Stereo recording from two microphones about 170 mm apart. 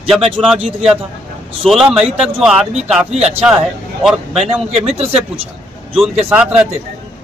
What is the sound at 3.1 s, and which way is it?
Speech, 40° right (ahead or behind).